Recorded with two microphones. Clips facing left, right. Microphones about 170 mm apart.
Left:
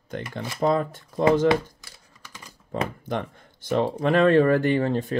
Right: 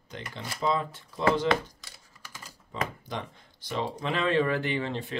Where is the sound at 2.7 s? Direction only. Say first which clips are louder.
Left 6 dB; 60° left (ahead or behind).